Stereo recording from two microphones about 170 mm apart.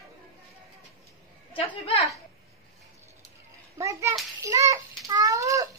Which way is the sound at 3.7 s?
20° right (ahead or behind).